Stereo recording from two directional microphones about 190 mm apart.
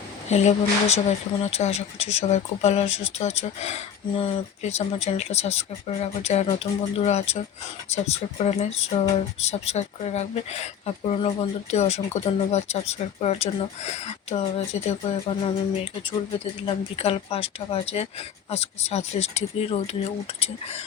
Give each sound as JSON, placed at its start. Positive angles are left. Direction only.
{"t": 0.3, "sound": "speech", "side_deg": 35}
{"t": 14.8, "sound": "speech", "side_deg": 25}